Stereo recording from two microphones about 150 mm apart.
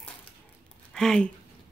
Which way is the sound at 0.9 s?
5° left (ahead or behind).